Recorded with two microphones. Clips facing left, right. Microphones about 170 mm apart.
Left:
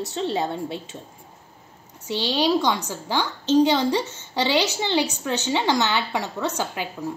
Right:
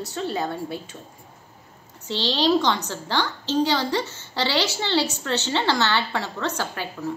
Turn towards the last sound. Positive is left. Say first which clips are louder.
# left 1 dB
turn(degrees=15)  # may be behind; listen again after turning